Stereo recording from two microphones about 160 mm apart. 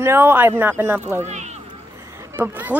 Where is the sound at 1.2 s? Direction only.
45° right (ahead or behind).